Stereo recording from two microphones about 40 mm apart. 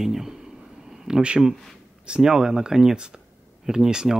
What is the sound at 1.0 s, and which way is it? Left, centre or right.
Speech, right.